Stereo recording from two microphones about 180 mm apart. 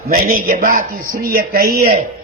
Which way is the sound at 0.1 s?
50° right (ahead or behind).